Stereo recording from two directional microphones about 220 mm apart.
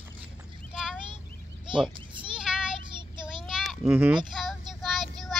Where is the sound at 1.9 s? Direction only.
20° right (ahead or behind).